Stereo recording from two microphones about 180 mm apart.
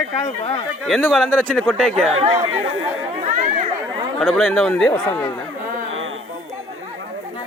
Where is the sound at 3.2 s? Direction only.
40° right (ahead or behind).